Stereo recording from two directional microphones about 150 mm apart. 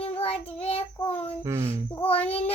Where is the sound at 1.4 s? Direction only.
20° right (ahead or behind).